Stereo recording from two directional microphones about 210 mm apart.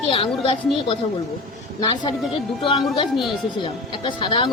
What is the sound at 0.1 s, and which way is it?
Speech, 25° left (ahead or behind).